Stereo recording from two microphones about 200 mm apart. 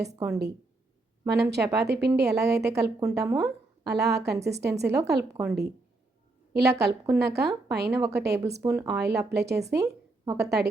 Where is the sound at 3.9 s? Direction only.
55° right (ahead or behind).